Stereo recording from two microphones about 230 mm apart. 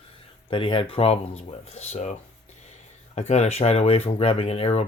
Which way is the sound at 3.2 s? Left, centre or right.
Left.